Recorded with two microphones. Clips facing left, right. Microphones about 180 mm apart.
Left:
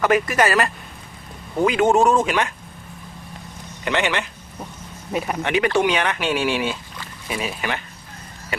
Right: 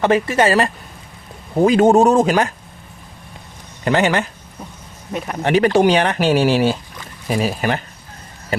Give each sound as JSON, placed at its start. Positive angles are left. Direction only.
{"t": 0.0, "sound": "speech", "side_deg": -30}
{"t": 3.8, "sound": "speech", "side_deg": -40}
{"t": 5.1, "sound": "speech", "side_deg": 5}
{"t": 5.4, "sound": "speech", "side_deg": -35}